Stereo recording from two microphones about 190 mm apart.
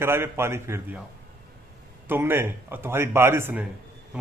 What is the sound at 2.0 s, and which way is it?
A man's voice, 10° right (ahead or behind).